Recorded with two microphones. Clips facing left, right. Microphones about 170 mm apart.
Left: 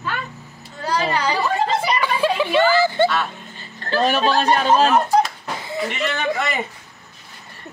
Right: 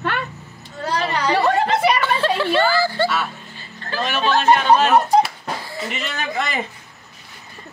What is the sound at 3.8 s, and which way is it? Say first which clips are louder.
Speech: left 3 dB; 35° left (ahead or behind).